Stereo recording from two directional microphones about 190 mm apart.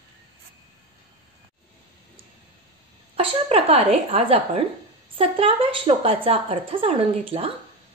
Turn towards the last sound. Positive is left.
turn(degrees=-30)  # may be behind; listen again after turning